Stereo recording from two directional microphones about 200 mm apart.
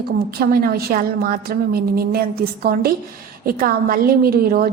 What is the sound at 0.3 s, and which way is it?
A woman's voice, 50° right (ahead or behind).